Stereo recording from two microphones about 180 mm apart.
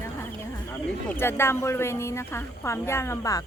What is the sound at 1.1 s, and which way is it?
A woman's voice, 10° left (ahead or behind).